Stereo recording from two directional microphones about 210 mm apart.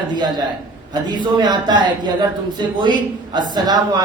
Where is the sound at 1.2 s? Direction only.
20° right (ahead or behind).